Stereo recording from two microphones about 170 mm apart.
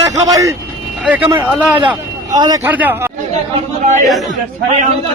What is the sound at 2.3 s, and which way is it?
Speech, 25° right (ahead or behind).